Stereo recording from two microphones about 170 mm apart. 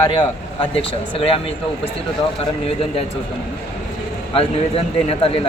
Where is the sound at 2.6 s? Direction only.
35° left (ahead or behind).